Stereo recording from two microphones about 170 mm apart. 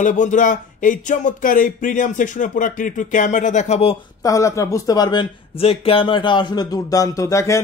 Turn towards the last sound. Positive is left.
turn(degrees=15)  # may be behind; listen again after turning